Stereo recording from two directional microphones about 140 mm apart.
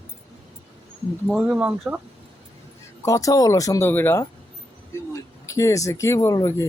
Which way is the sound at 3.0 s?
25° left (ahead or behind).